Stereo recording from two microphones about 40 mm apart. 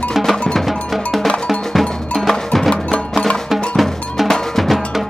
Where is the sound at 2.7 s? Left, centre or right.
Left.